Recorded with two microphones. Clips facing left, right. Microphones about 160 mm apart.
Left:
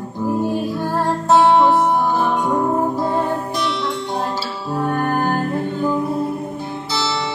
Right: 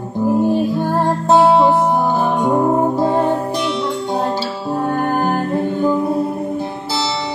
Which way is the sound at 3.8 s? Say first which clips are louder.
Right 3 dB; centre (ahead or behind).